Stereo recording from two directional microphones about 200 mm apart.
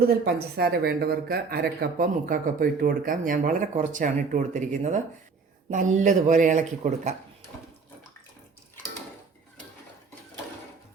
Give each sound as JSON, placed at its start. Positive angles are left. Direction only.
{"t": 0.3, "sound": "speech", "side_deg": -55}